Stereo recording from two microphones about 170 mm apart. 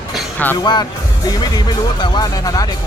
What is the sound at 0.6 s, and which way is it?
Speech, 25° left (ahead or behind).